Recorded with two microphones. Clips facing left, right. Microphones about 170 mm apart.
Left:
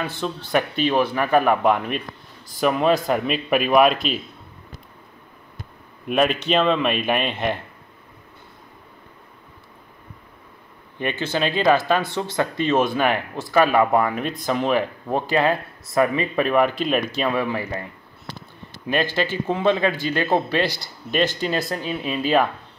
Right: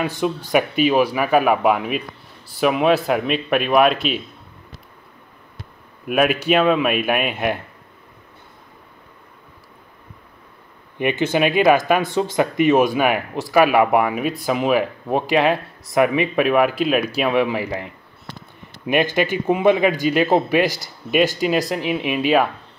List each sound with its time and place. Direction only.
0.0 s speech: 15° right (ahead or behind)
6.0 s speech: 5° right (ahead or behind)
11.0 s speech: 15° right (ahead or behind)
18.9 s speech: 15° right (ahead or behind)